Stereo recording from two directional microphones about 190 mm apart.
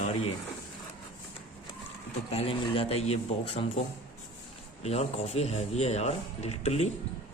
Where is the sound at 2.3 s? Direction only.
30° left (ahead or behind).